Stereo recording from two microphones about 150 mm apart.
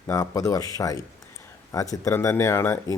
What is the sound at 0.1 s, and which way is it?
Speech, 20° left (ahead or behind).